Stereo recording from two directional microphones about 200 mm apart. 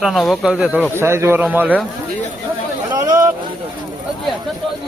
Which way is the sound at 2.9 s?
20° right (ahead or behind).